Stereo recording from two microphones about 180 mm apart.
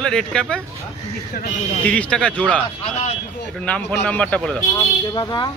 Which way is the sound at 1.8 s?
5° left (ahead or behind).